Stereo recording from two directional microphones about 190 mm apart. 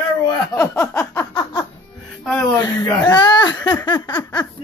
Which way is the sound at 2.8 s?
10° left (ahead or behind).